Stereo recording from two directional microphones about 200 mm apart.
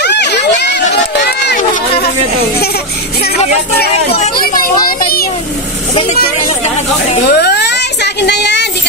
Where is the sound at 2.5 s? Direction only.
50° left (ahead or behind).